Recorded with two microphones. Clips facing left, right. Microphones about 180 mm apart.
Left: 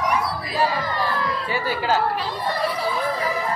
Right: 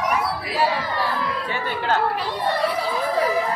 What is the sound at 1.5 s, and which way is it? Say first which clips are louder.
Chatter: left 2 dB; 5° left (ahead or behind).